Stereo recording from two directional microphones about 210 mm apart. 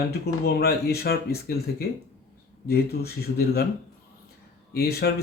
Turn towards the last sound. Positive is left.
turn(degrees=50)  # may be behind; listen again after turning